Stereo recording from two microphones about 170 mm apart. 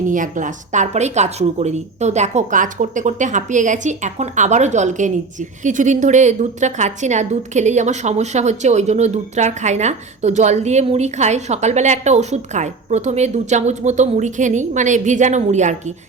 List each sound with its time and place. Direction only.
0.1 s a woman's voice: 50° right (ahead or behind)